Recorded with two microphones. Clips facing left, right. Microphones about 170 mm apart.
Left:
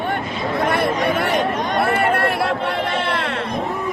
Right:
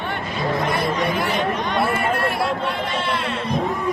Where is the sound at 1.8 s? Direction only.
60° left (ahead or behind).